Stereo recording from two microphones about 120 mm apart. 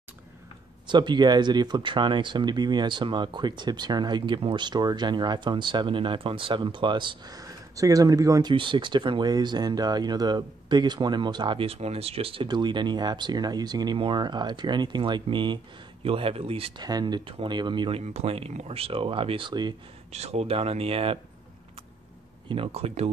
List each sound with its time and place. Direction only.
0.8 s speech: 40° right (ahead or behind)
12.4 s speech: 40° right (ahead or behind)
16.8 s speech: 35° right (ahead or behind)
18.0 s speech: 55° right (ahead or behind); by 19.7 s 40° right (ahead or behind)
20.1 s speech: 60° right (ahead or behind)
22.5 s speech: 55° right (ahead or behind)